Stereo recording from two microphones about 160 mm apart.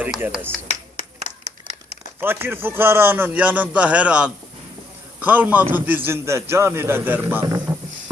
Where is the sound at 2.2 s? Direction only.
15° right (ahead or behind).